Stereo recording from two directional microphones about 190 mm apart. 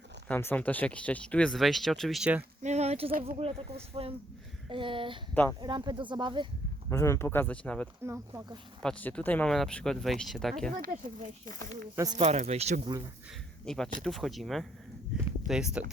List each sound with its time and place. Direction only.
0.3 s speech: 10° left (ahead or behind)
2.6 s speech: 35° right (ahead or behind)
5.3 s speech: 10° left (ahead or behind)
5.5 s speech: 25° right (ahead or behind)
6.9 s speech: 15° left (ahead or behind)
8.0 s speech: 15° right (ahead or behind)
8.8 s speech: 5° left (ahead or behind)
10.8 s speech: 45° right (ahead or behind)
13.7 s speech: 5° left (ahead or behind)